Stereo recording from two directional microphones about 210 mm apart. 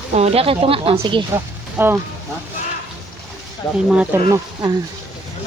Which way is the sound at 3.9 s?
10° right (ahead or behind).